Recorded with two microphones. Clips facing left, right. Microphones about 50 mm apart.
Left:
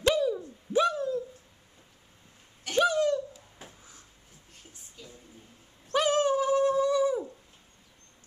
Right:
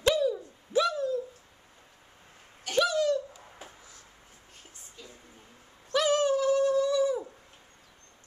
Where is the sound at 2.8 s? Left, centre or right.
Left.